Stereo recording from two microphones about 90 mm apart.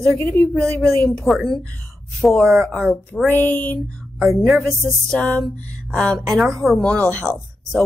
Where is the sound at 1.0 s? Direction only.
5° left (ahead or behind).